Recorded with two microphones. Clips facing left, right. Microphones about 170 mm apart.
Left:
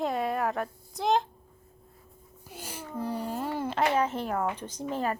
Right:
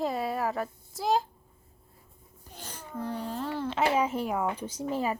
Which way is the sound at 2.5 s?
10° left (ahead or behind).